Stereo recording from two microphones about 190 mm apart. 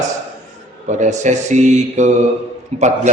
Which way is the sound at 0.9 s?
40° right (ahead or behind).